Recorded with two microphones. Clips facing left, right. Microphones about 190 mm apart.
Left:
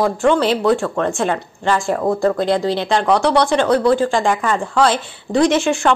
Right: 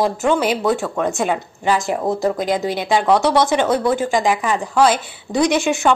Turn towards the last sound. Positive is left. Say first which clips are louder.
# left 2 dB
turn(degrees=-5)  # may be behind; listen again after turning